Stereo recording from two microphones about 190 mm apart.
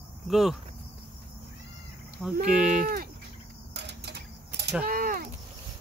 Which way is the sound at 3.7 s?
60° right (ahead or behind).